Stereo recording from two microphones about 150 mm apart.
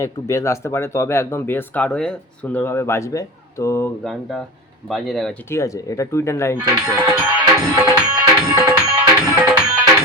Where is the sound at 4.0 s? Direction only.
Centre (ahead or behind).